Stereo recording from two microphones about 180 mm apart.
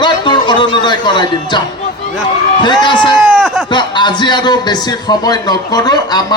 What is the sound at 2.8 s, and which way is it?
Speech, 25° left (ahead or behind).